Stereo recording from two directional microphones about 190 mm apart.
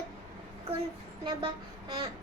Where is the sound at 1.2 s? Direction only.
25° right (ahead or behind).